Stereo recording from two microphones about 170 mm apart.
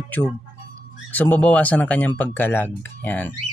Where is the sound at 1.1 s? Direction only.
10° left (ahead or behind).